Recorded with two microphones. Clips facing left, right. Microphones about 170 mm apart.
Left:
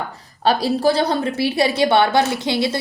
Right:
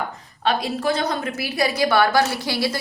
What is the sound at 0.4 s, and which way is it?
A woman's voice, 35° left (ahead or behind).